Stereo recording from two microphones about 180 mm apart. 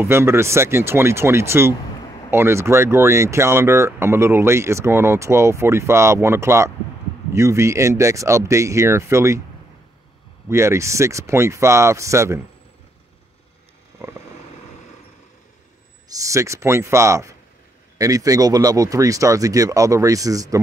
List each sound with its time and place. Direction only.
0.0 s speech: 15° right (ahead or behind)
10.5 s speech: 15° right (ahead or behind)
14.0 s vehicle: 15° right (ahead or behind)
16.1 s speech: 20° right (ahead or behind)